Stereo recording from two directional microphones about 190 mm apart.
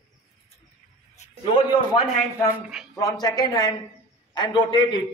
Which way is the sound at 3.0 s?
20° left (ahead or behind).